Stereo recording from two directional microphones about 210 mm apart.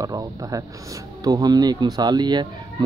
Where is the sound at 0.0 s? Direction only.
15° right (ahead or behind).